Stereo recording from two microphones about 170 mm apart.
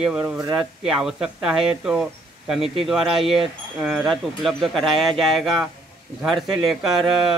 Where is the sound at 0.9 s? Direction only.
5° right (ahead or behind).